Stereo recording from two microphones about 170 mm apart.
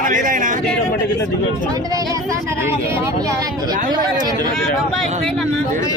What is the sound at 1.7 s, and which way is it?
Speech, 20° right (ahead or behind).